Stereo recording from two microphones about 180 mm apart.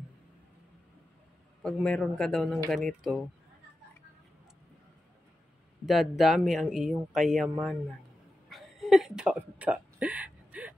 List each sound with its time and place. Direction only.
1.6 s speech: 5° left (ahead or behind)
5.9 s speech: centre (ahead or behind)
8.5 s a sound: centre (ahead or behind)